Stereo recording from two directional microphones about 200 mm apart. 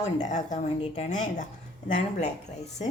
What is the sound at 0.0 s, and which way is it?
Speech, 40° left (ahead or behind).